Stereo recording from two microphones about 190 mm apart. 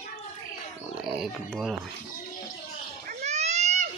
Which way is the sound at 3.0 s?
35° right (ahead or behind).